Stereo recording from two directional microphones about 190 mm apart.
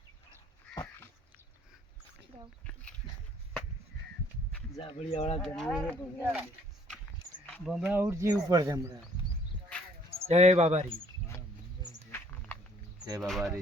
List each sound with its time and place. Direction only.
0.7 s dog: 10° left (ahead or behind)
4.8 s speech: 30° left (ahead or behind)
5.4 s speech: centre (ahead or behind)
7.4 s a sound: 5° left (ahead or behind)
7.8 s speech: 10° right (ahead or behind)
10.2 s speech: 35° right (ahead or behind)
12.1 s a sound: 10° left (ahead or behind)
13.1 s speech: centre (ahead or behind)